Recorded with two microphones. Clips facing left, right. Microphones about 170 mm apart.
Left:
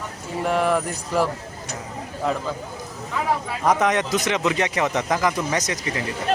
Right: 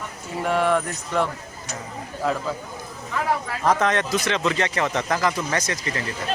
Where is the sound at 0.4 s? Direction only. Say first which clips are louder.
Even; centre (ahead or behind).